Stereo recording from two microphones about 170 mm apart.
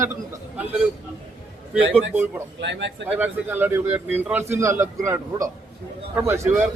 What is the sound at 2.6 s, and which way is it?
Speech, 90° right.